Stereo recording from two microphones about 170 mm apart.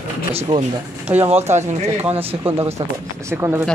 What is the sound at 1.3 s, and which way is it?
Speech, 40° right (ahead or behind).